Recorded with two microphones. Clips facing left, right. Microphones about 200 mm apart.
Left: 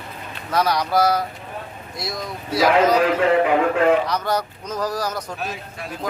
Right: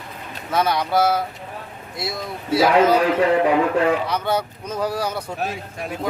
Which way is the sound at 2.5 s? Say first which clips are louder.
Right 1 dB; 25° right (ahead or behind).